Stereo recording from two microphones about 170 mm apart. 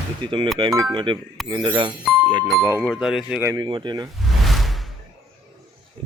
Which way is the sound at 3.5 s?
25° right (ahead or behind).